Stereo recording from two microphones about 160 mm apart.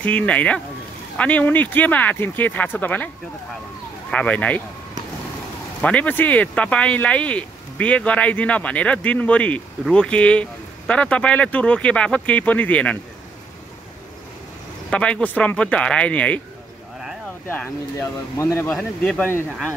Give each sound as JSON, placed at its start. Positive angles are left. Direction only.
{"t": 0.0, "sound": "speech", "side_deg": 10}
{"t": 4.1, "sound": "speech", "side_deg": 10}
{"t": 5.8, "sound": "speech", "side_deg": 10}
{"t": 14.9, "sound": "speech", "side_deg": 5}
{"t": 17.5, "sound": "speech", "side_deg": 15}
{"t": 18.7, "sound": "speech", "side_deg": 5}